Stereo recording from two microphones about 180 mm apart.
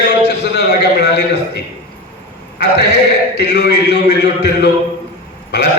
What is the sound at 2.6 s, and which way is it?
A man's voice, 65° left (ahead or behind).